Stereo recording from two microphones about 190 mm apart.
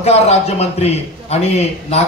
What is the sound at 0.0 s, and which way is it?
Speech, 35° left (ahead or behind).